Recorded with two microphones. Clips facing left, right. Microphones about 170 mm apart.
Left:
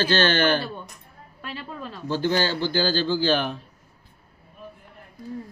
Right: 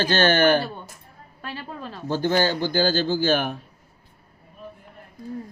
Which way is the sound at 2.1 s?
50° right (ahead or behind).